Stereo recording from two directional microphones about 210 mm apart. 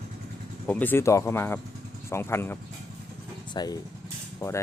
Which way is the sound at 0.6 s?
10° left (ahead or behind).